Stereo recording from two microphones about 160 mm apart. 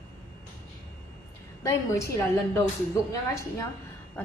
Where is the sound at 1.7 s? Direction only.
20° left (ahead or behind).